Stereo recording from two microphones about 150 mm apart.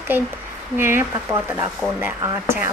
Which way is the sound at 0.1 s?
15° right (ahead or behind).